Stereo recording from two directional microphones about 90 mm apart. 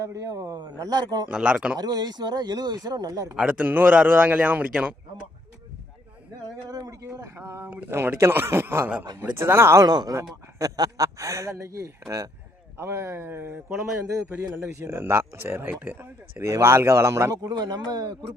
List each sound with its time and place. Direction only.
0.0 s speech: 35° right (ahead or behind)
1.3 s a man's voice: 10° right (ahead or behind)
1.8 s speech: 50° right (ahead or behind)
3.3 s a man's voice: 15° right (ahead or behind)
6.7 s speech: 45° right (ahead or behind)
7.2 s speech: 30° right (ahead or behind)
9.8 s speech: 45° right (ahead or behind); by 13.8 s 30° right (ahead or behind)
14.8 s speech: 30° right (ahead or behind)
17.6 s speech: 50° right (ahead or behind)